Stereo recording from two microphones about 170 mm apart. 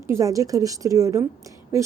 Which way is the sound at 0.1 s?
20° right (ahead or behind).